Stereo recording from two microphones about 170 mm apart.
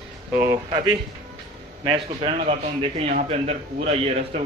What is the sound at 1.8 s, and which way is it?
A man's voice, 30° right (ahead or behind).